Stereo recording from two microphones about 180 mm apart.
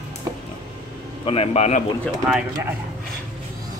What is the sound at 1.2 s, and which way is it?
Speech, 35° left (ahead or behind).